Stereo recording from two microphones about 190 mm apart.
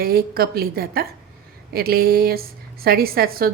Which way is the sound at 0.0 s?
50° right (ahead or behind).